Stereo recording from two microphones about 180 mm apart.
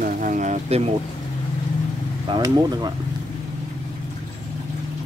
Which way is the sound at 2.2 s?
20° right (ahead or behind).